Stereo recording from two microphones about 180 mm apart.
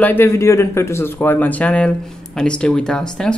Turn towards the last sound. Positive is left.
turn(degrees=5)  # may be behind; listen again after turning